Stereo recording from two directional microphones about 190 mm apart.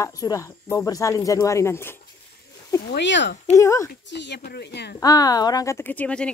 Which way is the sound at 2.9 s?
70° left (ahead or behind).